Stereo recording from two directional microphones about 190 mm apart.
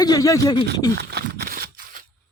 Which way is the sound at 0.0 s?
20° left (ahead or behind).